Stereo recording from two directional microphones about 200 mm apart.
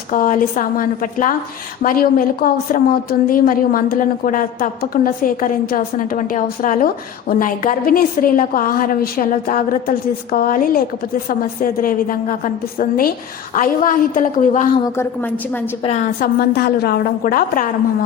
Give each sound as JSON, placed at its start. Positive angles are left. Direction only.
{"t": 0.1, "sound": "a woman's voice", "side_deg": 40}
{"t": 15.8, "sound": "a woman's voice", "side_deg": 35}
{"t": 16.2, "sound": "a woman's voice", "side_deg": 50}